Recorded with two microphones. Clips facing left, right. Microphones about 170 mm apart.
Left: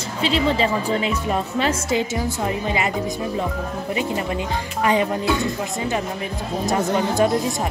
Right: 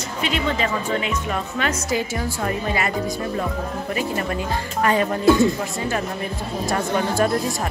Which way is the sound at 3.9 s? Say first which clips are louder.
Left 1 dB; 15° left (ahead or behind).